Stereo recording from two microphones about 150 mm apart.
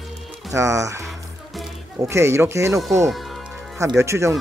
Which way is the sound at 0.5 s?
20° right (ahead or behind).